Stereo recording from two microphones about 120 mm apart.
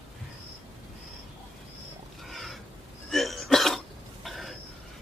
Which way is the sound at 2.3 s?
Centre (ahead or behind).